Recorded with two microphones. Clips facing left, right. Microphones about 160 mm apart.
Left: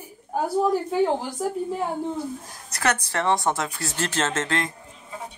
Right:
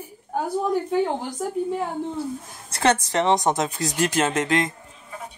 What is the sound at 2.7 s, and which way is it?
Speech, 25° right (ahead or behind).